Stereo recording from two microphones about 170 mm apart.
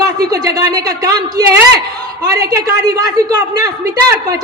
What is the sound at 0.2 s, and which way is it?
A man's voice, 20° right (ahead or behind).